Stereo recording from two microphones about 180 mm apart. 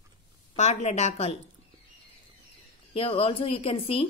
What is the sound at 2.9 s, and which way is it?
Speech, 30° left (ahead or behind).